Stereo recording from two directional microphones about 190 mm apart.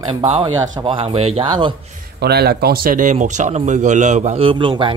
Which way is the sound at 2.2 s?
55° right (ahead or behind).